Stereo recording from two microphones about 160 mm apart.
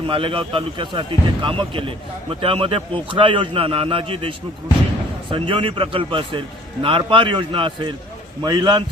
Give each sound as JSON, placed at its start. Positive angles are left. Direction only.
{"t": 0.1, "sound": "a man's voice", "side_deg": -35}